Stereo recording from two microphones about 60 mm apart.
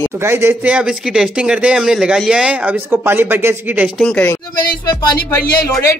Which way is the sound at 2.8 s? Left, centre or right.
Right.